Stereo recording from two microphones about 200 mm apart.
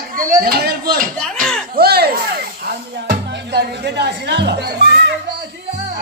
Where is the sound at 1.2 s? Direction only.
5° left (ahead or behind).